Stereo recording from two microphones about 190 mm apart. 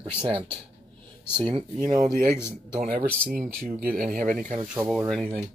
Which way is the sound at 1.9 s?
40° right (ahead or behind).